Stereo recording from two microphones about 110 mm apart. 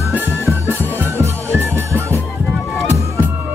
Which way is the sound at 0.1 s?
20° right (ahead or behind).